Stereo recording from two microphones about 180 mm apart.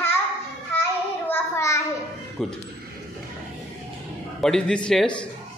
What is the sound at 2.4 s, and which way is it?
Speech, 5° left (ahead or behind).